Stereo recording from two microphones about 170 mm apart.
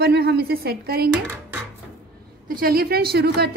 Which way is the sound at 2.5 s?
60° right (ahead or behind).